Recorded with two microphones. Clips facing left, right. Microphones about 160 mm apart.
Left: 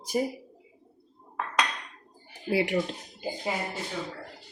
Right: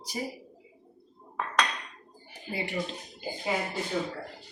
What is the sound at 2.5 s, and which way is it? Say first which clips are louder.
Speech: left 9 dB; 90° left.